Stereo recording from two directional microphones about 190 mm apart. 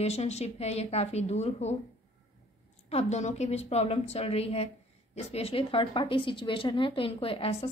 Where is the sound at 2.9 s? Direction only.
35° left (ahead or behind).